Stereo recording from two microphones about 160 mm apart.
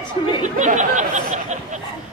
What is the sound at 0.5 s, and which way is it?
Speech, 50° right (ahead or behind).